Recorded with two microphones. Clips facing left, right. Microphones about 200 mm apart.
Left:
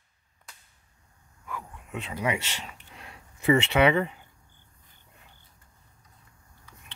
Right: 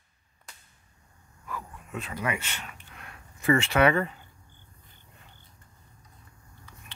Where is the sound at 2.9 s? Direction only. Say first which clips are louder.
Left 1 dB; 25° left (ahead or behind).